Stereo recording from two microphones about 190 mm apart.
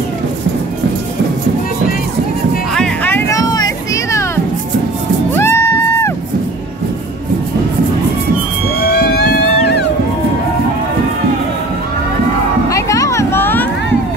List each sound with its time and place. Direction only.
2.7 s music: 5° left (ahead or behind)
5.3 s music: 15° left (ahead or behind)
8.8 s music: 55° left (ahead or behind)
12.6 s music: 15° left (ahead or behind)